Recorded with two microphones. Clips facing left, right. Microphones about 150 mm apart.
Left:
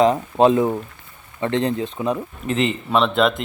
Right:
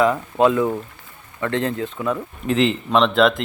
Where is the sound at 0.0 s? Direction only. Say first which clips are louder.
Left 2 dB; 25° left (ahead or behind).